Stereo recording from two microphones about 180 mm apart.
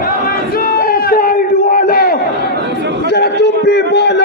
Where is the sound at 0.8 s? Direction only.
55° left (ahead or behind).